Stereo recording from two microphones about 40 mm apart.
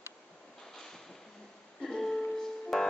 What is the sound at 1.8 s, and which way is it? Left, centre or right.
Music, centre.